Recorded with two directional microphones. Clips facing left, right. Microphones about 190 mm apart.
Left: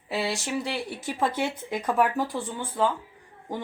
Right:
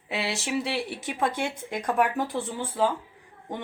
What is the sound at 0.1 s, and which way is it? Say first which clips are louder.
Speech: left 1 dB; centre (ahead or behind).